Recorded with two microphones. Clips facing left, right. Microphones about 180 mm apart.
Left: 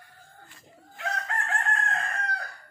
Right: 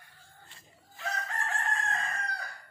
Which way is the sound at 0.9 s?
65° left (ahead or behind).